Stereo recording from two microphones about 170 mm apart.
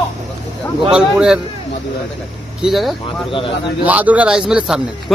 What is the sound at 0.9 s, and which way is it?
Speech, 5° right (ahead or behind).